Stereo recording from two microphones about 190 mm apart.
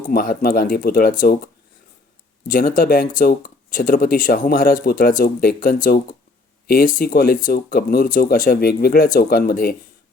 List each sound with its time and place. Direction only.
0.1 s speech: 50° left (ahead or behind)
2.5 s speech: 50° left (ahead or behind)